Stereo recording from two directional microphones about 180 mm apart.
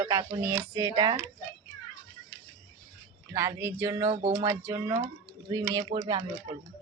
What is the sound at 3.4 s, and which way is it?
Speech, 15° right (ahead or behind).